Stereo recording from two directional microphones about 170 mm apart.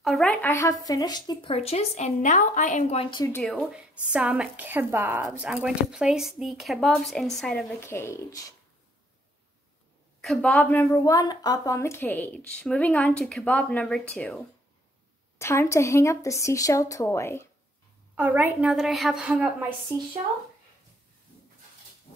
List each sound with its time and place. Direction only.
0.0 s a woman's voice: centre (ahead or behind); by 1.5 s 25° left (ahead or behind)
1.5 s a woman's voice: 35° left (ahead or behind)
3.4 s speech: centre (ahead or behind)
7.8 s a woman's voice: 15° left (ahead or behind)
10.2 s a woman's voice: 5° left (ahead or behind)
15.3 s a woman's voice: 15° left (ahead or behind)
18.1 s speech: 10° right (ahead or behind)
19.9 s speech: 15° right (ahead or behind)